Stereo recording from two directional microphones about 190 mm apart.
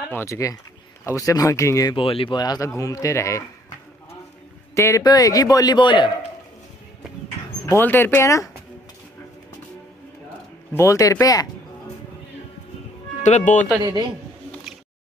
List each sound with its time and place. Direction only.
0.1 s speech: 15° left (ahead or behind)
4.7 s a man's voice: 15° left (ahead or behind)
7.6 s speech: 15° left (ahead or behind)
10.7 s speech: 15° left (ahead or behind)
13.2 s speech: 40° left (ahead or behind)
13.7 s a man's voice: 20° right (ahead or behind)